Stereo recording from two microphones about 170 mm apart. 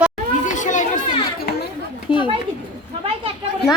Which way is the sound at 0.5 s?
45° left (ahead or behind).